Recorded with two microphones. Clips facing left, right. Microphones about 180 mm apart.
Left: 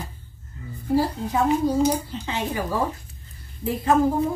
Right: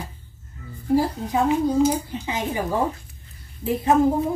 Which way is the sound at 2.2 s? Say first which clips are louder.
Right 1 dB; 15° right (ahead or behind).